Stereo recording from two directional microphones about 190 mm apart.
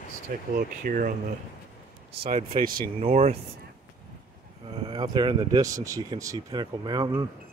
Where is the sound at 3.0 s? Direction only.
30° right (ahead or behind).